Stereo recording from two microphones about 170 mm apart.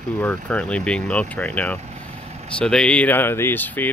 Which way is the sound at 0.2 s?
10° left (ahead or behind).